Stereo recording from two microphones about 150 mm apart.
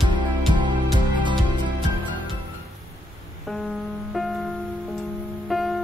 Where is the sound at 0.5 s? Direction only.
30° right (ahead or behind).